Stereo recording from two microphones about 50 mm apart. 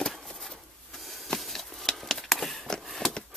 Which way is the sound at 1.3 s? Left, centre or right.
Centre.